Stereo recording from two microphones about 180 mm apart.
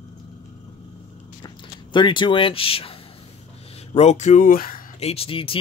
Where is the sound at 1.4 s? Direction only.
25° left (ahead or behind); by 4.8 s 50° left (ahead or behind).